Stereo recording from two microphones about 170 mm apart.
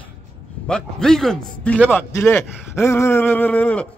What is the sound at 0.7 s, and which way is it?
A man's voice, 5° left (ahead or behind).